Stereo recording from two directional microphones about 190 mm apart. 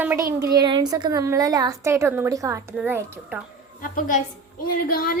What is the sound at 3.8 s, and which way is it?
A woman's voice, 45° left (ahead or behind).